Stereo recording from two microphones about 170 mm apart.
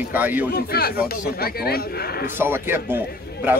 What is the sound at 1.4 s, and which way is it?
Speech, 65° left (ahead or behind).